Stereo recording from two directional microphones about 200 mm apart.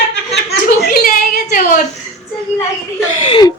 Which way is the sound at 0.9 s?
50° left (ahead or behind).